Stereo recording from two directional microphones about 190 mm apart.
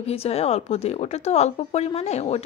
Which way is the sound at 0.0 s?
30° left (ahead or behind).